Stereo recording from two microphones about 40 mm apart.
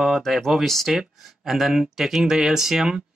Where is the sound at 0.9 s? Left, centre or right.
Centre.